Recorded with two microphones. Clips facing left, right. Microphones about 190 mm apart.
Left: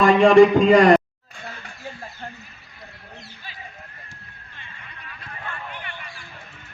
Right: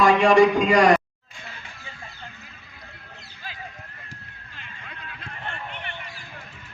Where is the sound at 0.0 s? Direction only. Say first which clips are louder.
Left 4 dB; 55° left (ahead or behind).